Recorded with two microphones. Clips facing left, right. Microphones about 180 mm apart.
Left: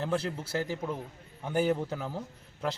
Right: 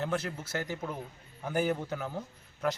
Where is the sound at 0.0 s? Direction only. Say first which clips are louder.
Left 2 dB; 30° left (ahead or behind).